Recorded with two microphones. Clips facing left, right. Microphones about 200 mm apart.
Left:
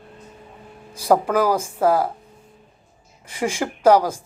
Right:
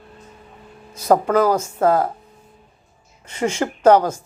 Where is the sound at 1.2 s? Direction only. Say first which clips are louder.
Right 2 dB; 10° left (ahead or behind).